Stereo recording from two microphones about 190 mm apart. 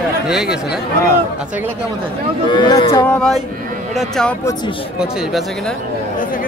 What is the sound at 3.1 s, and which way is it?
Speech, 5° left (ahead or behind).